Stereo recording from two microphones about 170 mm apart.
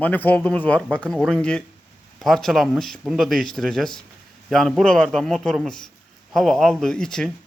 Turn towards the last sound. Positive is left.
turn(degrees=5)  # may be behind; listen again after turning